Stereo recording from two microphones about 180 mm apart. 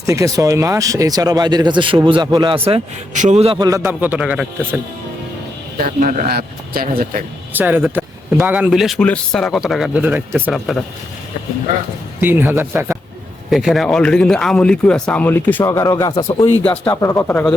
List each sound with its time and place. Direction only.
0.0 s a man's voice: 20° right (ahead or behind)
3.7 s speech: 15° right (ahead or behind)
5.7 s speech: 50° right (ahead or behind)
7.5 s speech: 10° right (ahead or behind)
12.2 s speech: 10° right (ahead or behind)
13.5 s speech: centre (ahead or behind); by 16.5 s 20° left (ahead or behind)
16.6 s speech: 10° left (ahead or behind)